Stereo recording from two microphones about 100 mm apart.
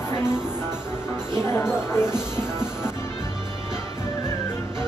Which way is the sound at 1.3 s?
25° left (ahead or behind).